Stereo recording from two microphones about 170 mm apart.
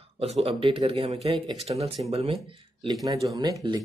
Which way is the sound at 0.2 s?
35° right (ahead or behind).